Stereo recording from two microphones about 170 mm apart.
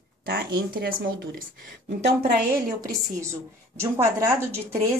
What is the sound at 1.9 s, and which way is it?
Speech, 75° right (ahead or behind).